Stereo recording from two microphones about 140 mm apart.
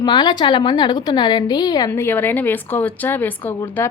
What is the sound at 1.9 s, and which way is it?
A woman's voice, 15° left (ahead or behind).